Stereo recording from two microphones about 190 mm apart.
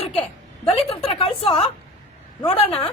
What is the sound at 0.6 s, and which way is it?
A woman's voice, 30° left (ahead or behind).